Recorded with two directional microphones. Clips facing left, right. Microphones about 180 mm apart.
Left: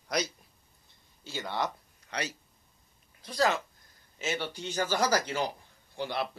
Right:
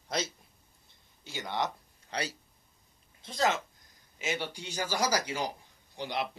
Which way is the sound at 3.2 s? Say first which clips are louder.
Left 2 dB; 20° right (ahead or behind).